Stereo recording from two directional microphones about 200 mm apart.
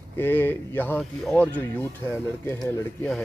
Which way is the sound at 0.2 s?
10° left (ahead or behind).